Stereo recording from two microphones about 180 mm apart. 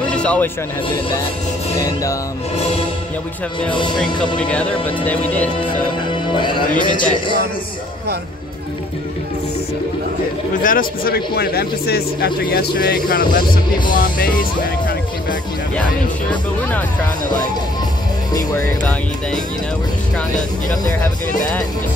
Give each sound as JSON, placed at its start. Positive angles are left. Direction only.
{"t": 0.1, "sound": "music", "side_deg": 5}
{"t": 3.9, "sound": "speech", "side_deg": 5}
{"t": 6.3, "sound": "speech", "side_deg": 25}
{"t": 6.7, "sound": "music", "side_deg": 50}
{"t": 10.6, "sound": "speech", "side_deg": 50}
{"t": 13.8, "sound": "music", "side_deg": 50}